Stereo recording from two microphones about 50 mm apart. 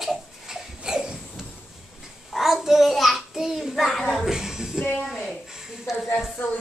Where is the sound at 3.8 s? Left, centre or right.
Centre.